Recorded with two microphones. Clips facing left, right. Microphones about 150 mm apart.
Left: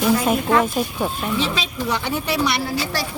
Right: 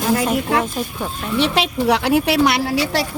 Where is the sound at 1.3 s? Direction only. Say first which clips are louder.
Right 5 dB; 70° right (ahead or behind).